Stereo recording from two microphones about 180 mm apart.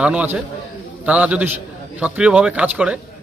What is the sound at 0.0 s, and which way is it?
A man's voice, 5° right (ahead or behind).